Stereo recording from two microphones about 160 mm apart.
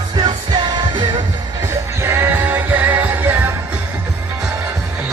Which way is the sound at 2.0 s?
15° right (ahead or behind).